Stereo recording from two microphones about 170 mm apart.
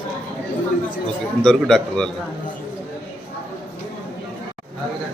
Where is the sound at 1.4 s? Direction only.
5° left (ahead or behind).